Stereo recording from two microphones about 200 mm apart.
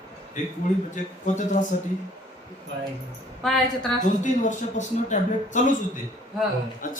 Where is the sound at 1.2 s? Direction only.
40° left (ahead or behind).